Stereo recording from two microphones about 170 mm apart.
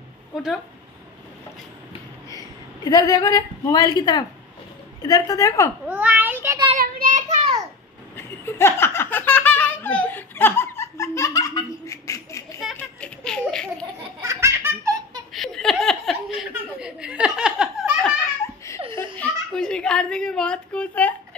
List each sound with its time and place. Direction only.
2.2 s a woman's voice: 20° left (ahead or behind)
5.9 s a sound: 10° right (ahead or behind)
6.8 s child singing: 50° right (ahead or behind)
8.2 s laughter: 15° left (ahead or behind)
12.7 s baby laughter: 5° left (ahead or behind)
14.2 s laughter: 15° right (ahead or behind)
15.3 s laughter: centre (ahead or behind)
18.9 s a sound: 10° left (ahead or behind)